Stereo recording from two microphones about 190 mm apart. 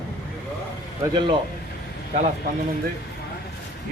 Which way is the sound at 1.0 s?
25° right (ahead or behind).